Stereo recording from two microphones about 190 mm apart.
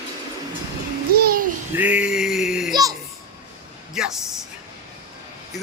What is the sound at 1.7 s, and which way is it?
Male singing, 10° right (ahead or behind).